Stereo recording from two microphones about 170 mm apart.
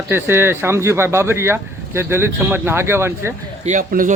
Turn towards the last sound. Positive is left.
turn(degrees=-55)  # may be behind; listen again after turning